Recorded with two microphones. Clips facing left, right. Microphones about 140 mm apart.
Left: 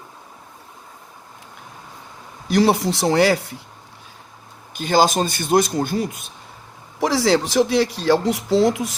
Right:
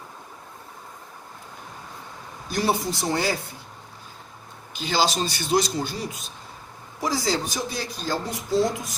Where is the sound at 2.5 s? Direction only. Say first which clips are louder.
Left 7 dB; 85° left.